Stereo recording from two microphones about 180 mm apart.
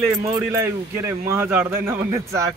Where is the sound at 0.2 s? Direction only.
15° right (ahead or behind).